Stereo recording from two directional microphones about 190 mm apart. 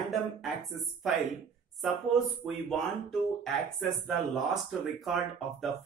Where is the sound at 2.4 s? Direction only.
Centre (ahead or behind).